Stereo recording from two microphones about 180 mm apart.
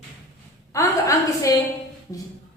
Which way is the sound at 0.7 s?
20° left (ahead or behind).